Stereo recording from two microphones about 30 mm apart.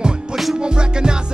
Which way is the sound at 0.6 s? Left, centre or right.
Right.